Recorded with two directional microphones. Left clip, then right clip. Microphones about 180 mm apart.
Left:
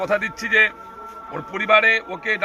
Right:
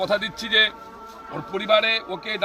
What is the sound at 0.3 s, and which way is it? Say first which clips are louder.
A man's voice: left 3 dB; 10° right (ahead or behind).